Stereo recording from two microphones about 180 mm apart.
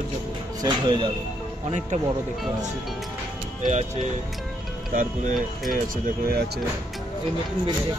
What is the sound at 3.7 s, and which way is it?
Speech, 40° right (ahead or behind).